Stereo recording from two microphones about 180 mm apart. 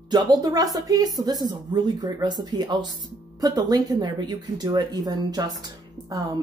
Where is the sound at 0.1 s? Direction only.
20° right (ahead or behind).